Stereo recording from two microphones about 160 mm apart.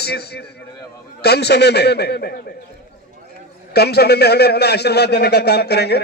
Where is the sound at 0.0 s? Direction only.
85° left.